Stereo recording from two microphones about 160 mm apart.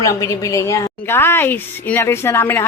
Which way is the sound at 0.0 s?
20° left (ahead or behind).